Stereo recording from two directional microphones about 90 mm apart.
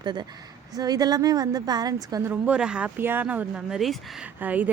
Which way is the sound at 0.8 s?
45° right (ahead or behind).